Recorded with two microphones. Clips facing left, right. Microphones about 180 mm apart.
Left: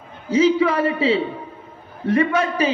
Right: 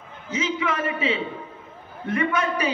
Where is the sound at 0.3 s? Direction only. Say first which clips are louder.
Left 10 dB; 35° left (ahead or behind).